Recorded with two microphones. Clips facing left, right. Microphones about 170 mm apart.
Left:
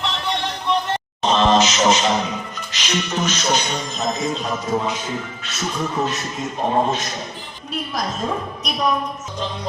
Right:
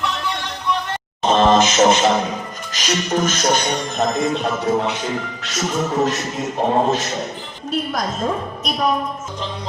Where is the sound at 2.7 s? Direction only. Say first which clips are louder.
Right 4 dB; 45° right (ahead or behind); by 5.0 s 65° right (ahead or behind).